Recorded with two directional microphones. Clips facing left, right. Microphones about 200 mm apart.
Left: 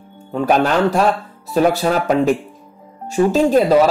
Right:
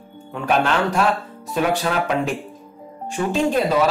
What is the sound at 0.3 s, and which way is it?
Speech, 40° left (ahead or behind).